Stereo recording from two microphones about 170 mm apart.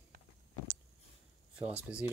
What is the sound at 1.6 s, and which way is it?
Speech, 10° right (ahead or behind).